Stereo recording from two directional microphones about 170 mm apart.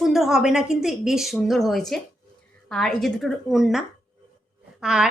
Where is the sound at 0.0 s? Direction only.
Centre (ahead or behind).